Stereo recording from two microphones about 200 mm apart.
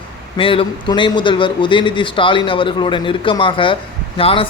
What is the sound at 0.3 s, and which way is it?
A man's voice, 25° left (ahead or behind).